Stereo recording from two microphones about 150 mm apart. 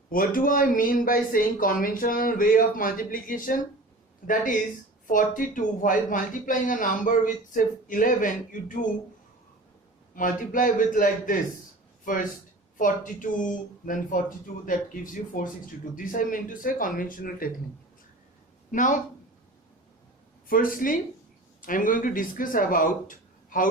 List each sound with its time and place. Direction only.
0.1 s speech: 65° left (ahead or behind)
5.0 s speech: 60° left (ahead or behind)
10.2 s speech: 60° left (ahead or behind)
12.7 s speech: 60° left (ahead or behind)
18.7 s speech: 60° left (ahead or behind)
20.5 s speech: 70° left (ahead or behind)